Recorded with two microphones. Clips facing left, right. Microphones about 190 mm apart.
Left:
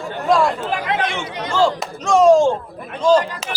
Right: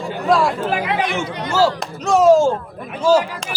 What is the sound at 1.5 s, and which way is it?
Speech, 5° right (ahead or behind).